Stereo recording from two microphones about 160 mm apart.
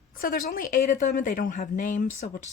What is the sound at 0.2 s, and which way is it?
A woman's voice, 65° left (ahead or behind).